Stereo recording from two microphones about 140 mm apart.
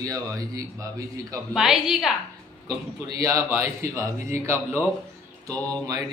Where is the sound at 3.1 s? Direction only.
25° right (ahead or behind).